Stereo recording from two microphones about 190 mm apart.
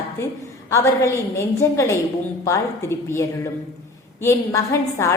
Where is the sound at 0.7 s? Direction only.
15° left (ahead or behind).